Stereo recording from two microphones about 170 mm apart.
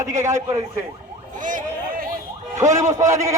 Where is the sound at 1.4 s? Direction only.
50° right (ahead or behind).